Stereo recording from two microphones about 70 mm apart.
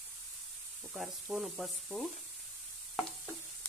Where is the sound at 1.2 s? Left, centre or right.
Centre.